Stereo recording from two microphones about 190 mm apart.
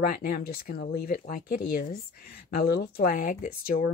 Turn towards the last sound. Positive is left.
turn(degrees=50)  # may be behind; listen again after turning